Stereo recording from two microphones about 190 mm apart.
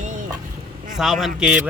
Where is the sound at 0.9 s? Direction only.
Centre (ahead or behind).